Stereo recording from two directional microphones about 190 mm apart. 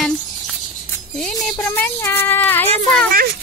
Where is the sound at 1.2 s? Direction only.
Centre (ahead or behind).